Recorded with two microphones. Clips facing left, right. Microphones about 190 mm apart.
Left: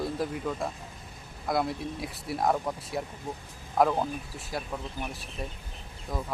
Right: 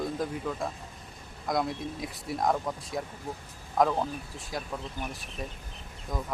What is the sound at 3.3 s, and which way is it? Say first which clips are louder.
Speech: left 1 dB; 20° left (ahead or behind).